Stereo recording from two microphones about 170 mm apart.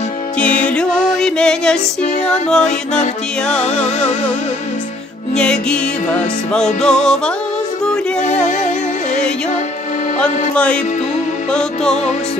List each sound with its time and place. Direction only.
0.4 s music: 5° left (ahead or behind)
3.6 s music: 40° left (ahead or behind)
5.3 s music: 5° left (ahead or behind)
8.5 s music: 45° left (ahead or behind)
10.2 s music: 5° left (ahead or behind)